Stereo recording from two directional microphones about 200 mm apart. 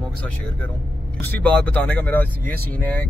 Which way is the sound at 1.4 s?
5° left (ahead or behind).